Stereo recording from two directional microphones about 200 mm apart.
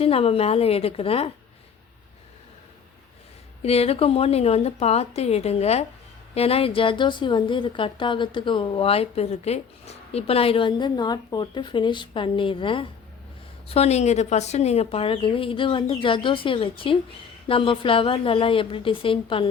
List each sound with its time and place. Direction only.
0.0 s a woman's voice: 30° left (ahead or behind)
3.6 s a woman's voice: 30° left (ahead or behind)